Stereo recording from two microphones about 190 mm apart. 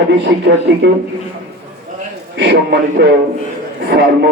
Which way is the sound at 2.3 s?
65° right (ahead or behind).